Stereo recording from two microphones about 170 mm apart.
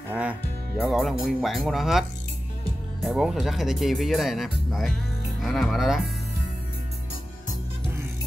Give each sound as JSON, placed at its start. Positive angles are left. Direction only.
{"t": 0.1, "sound": "speech", "side_deg": -10}